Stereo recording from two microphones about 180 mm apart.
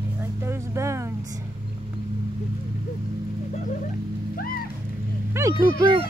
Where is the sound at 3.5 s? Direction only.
45° left (ahead or behind).